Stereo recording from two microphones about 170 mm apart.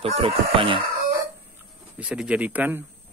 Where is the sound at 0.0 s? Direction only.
35° right (ahead or behind).